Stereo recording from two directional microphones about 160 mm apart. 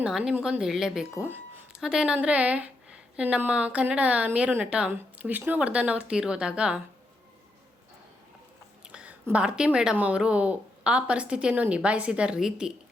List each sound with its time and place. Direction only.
0.0 s a woman's voice: 5° right (ahead or behind)
8.9 s a woman's voice: 5° right (ahead or behind)